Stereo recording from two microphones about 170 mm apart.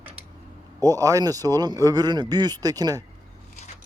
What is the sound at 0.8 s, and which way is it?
A man's voice, 20° right (ahead or behind).